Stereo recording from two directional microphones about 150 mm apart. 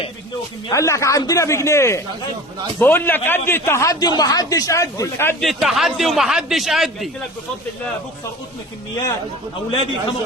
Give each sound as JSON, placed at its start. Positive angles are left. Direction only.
{"t": 0.7, "sound": "a man's voice", "side_deg": 20}
{"t": 5.4, "sound": "a man's voice", "side_deg": 0}